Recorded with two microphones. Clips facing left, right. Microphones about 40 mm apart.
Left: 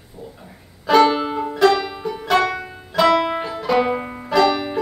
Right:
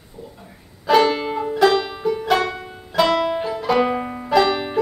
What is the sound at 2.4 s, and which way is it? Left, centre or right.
Music, left.